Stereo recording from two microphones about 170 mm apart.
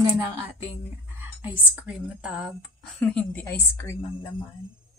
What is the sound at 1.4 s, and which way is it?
A woman's voice, 5° right (ahead or behind).